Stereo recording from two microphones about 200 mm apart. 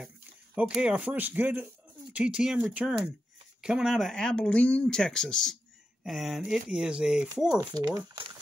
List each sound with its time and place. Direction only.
0.6 s speech: 5° right (ahead or behind)
7.5 s speech: 20° right (ahead or behind)